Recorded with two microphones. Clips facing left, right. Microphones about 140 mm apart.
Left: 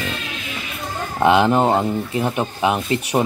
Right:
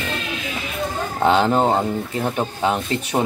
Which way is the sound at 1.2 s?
10° left (ahead or behind).